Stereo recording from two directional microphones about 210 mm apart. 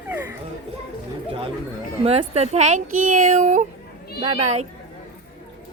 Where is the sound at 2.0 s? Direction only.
30° right (ahead or behind).